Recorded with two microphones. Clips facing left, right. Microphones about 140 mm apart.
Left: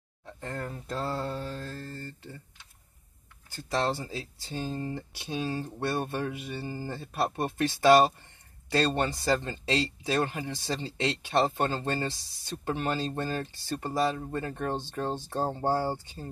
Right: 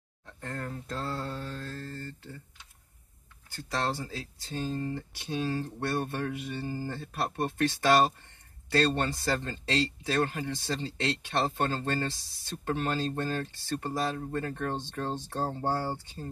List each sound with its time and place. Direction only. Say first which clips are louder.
0.2 s mantra: left 2 dB; 15° left (ahead or behind)
3.9 s speech: left 2 dB; 15° left (ahead or behind)
15.6 s speech: left 4 dB; 25° left (ahead or behind)